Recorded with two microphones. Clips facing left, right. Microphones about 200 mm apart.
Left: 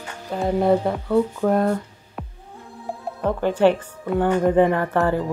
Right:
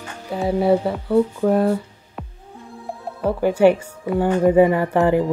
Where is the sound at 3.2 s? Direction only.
10° right (ahead or behind).